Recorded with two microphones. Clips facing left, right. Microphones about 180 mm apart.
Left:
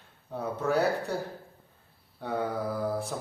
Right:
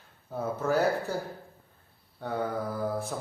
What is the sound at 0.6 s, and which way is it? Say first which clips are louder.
Speech: even; centre (ahead or behind).